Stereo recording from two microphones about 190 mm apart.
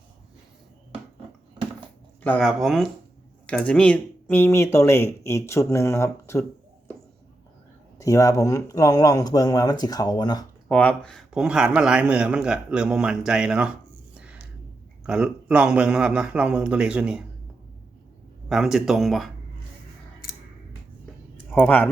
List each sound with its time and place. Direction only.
2.2 s a man's voice: 10° left (ahead or behind)
7.9 s speech: 15° left (ahead or behind)
10.7 s a man's voice: 5° left (ahead or behind)
15.0 s a man's voice: 5° right (ahead or behind)
18.4 s a man's voice: centre (ahead or behind)
21.5 s speech: 10° left (ahead or behind)